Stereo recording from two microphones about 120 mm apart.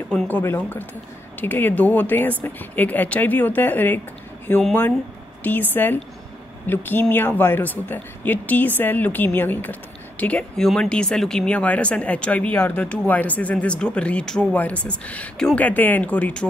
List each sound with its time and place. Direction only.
0.1 s speech: 15° left (ahead or behind)
5.4 s speech: 15° left (ahead or behind)